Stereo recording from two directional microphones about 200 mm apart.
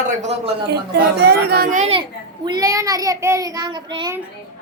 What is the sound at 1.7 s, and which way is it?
Speech, 35° right (ahead or behind).